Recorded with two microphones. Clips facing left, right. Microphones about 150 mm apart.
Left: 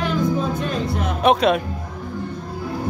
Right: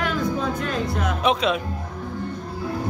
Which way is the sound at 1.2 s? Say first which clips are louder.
Left 6 dB; 55° left (ahead or behind).